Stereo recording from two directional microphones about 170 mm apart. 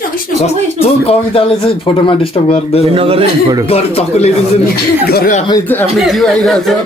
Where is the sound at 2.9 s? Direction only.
35° right (ahead or behind).